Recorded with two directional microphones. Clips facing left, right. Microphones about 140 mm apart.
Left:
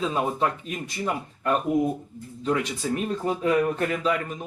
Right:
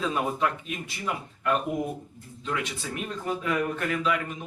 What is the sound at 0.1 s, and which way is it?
Speech, 35° left (ahead or behind).